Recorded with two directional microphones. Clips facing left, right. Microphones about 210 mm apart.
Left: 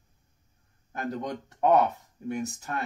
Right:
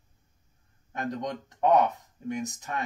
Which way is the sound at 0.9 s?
5° left (ahead or behind).